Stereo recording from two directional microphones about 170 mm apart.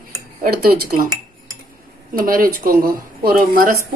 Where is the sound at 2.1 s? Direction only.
55° right (ahead or behind).